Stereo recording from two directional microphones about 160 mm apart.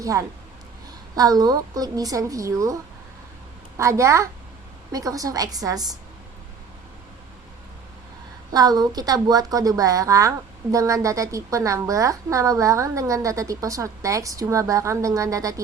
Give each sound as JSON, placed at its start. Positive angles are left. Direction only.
{"t": 0.0, "sound": "a woman's voice", "side_deg": -20}
{"t": 8.5, "sound": "a woman's voice", "side_deg": -25}